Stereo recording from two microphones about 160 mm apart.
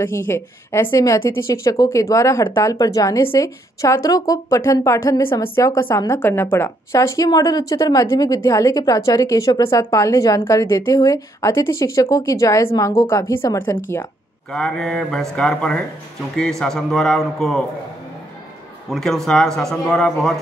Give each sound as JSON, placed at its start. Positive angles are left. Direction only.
{"t": 0.3, "sound": "a woman's voice", "side_deg": 15}
{"t": 18.9, "sound": "speech", "side_deg": 0}